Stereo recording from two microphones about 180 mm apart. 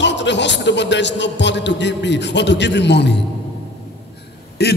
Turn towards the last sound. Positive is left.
turn(degrees=65)  # may be behind; listen again after turning